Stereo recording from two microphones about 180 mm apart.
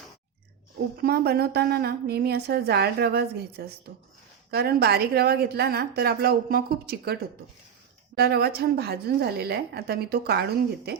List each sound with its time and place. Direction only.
1.0 s a woman's voice: 60° right (ahead or behind)